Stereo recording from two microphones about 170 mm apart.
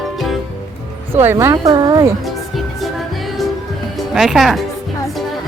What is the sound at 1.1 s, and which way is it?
Speech, 15° right (ahead or behind).